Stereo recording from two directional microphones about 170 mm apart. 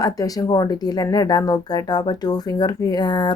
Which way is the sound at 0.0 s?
20° left (ahead or behind).